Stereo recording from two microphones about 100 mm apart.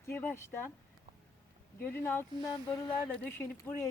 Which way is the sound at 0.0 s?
20° left (ahead or behind).